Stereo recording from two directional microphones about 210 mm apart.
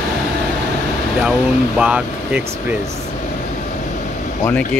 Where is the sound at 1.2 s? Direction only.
5° right (ahead or behind).